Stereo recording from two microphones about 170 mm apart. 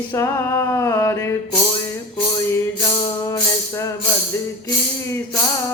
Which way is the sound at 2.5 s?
20° left (ahead or behind).